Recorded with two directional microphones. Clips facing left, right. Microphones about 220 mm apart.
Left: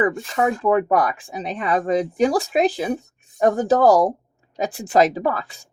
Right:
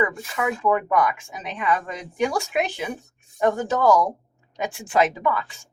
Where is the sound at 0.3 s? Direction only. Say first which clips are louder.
Left 3 dB; 35° left (ahead or behind).